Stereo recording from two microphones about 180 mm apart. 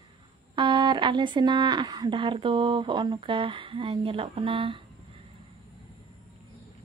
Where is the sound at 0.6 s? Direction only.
25° right (ahead or behind).